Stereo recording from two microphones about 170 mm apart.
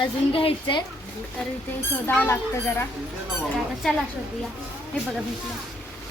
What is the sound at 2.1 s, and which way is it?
Speech, 10° left (ahead or behind).